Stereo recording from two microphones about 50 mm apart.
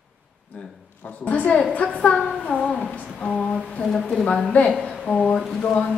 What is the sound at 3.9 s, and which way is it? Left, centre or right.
Speech, centre.